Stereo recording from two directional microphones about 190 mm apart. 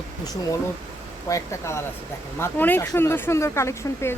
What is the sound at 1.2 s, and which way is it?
Speech, 15° left (ahead or behind).